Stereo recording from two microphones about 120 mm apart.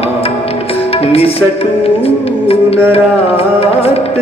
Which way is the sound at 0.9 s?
55° left (ahead or behind).